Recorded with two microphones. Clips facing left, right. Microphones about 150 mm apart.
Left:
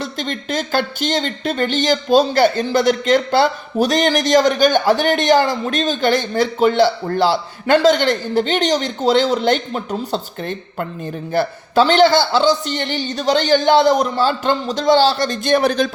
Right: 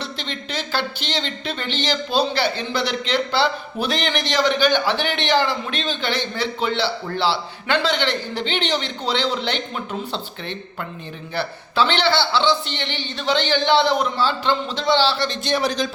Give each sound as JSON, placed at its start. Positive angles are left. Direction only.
{"t": 0.0, "sound": "speech", "side_deg": 45}